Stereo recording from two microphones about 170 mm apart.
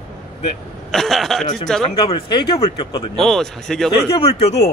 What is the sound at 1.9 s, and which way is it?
Speech, 25° left (ahead or behind).